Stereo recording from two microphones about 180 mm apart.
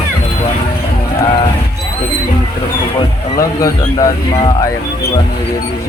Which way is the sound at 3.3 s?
20° left (ahead or behind).